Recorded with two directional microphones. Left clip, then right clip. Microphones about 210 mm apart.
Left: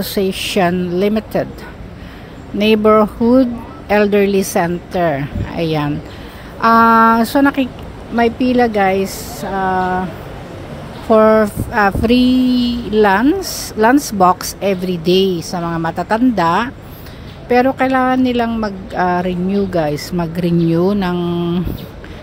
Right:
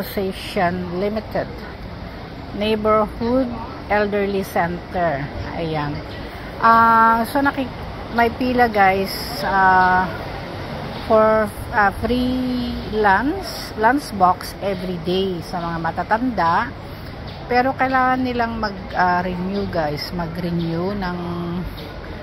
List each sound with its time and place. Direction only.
0.0 s speech: 60° left (ahead or behind)
2.6 s speech: 60° left (ahead or behind); by 10.0 s 45° left (ahead or behind)
11.1 s speech: 60° left (ahead or behind)